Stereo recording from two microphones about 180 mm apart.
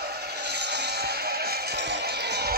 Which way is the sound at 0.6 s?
70° right (ahead or behind).